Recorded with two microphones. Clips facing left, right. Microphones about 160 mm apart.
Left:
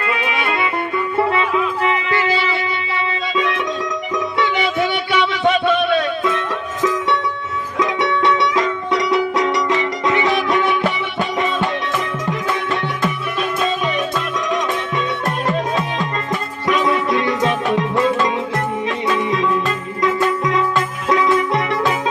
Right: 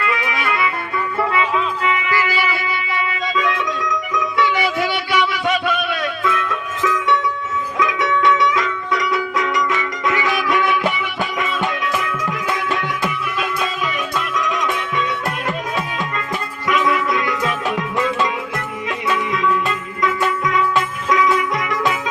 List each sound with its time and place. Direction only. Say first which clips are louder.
0.0 s music: left 1 dB; 25° left (ahead or behind)
3.3 s music: left 1 dB; 30° left (ahead or behind)
14.3 s music: left 1 dB; 30° left (ahead or behind)
16.6 s music: left 1 dB; 30° left (ahead or behind)